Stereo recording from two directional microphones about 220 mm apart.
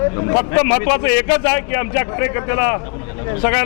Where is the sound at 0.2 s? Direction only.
20° left (ahead or behind).